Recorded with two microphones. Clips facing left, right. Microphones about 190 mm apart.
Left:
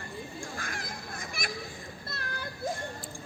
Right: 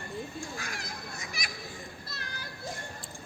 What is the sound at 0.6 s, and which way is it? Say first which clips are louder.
Honk: left 1 dB; 50° left (ahead or behind).